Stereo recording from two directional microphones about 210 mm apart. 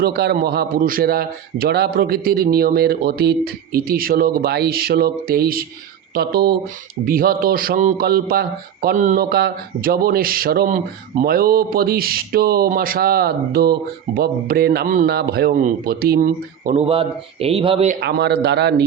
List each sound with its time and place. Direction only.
0.0 s speech: 50° right (ahead or behind); by 17.9 s 25° right (ahead or behind)
18.0 s speech: 50° right (ahead or behind)